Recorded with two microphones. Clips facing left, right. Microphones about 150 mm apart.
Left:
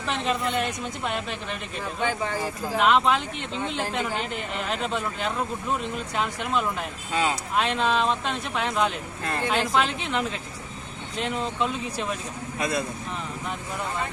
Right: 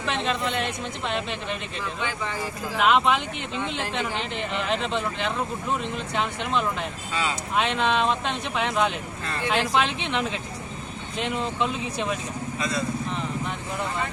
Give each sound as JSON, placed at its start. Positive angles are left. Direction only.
{"t": 0.0, "sound": "a woman's voice", "side_deg": 5}
{"t": 1.8, "sound": "speech", "side_deg": 45}
{"t": 2.7, "sound": "a woman's voice", "side_deg": 0}
{"t": 4.7, "sound": "a woman's voice", "side_deg": 5}
{"t": 7.1, "sound": "speech", "side_deg": 50}
{"t": 7.5, "sound": "a woman's voice", "side_deg": 0}
{"t": 9.2, "sound": "speech", "side_deg": 45}
{"t": 9.7, "sound": "a woman's voice", "side_deg": 0}
{"t": 12.5, "sound": "speech", "side_deg": 55}